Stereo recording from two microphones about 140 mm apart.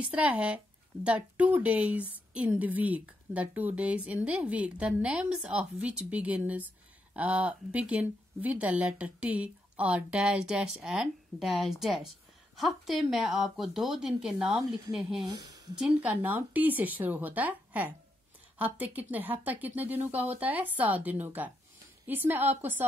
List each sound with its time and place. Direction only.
0.0 s a woman's voice: 10° right (ahead or behind)
15.2 s a woman's voice: 30° right (ahead or behind)
15.8 s a woman's voice: 10° right (ahead or behind)